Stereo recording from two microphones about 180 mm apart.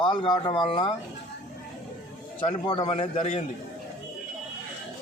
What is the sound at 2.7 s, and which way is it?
Speech, 30° left (ahead or behind).